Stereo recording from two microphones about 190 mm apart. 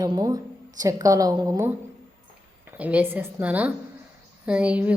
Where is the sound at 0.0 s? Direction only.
20° right (ahead or behind).